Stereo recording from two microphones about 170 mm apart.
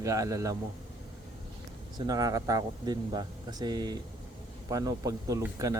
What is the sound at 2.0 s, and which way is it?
Speech, 20° right (ahead or behind).